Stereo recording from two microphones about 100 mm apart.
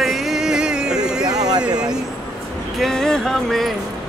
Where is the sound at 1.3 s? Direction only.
40° right (ahead or behind).